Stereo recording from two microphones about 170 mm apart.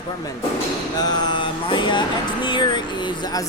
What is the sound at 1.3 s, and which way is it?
Speech, 30° left (ahead or behind).